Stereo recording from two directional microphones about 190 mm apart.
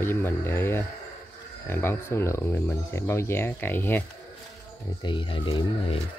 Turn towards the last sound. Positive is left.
turn(degrees=25)  # may be behind; listen again after turning